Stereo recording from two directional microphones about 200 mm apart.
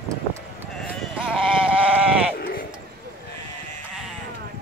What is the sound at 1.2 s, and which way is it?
Sheep, 5° right (ahead or behind).